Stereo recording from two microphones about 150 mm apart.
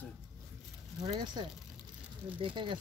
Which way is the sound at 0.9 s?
30° right (ahead or behind).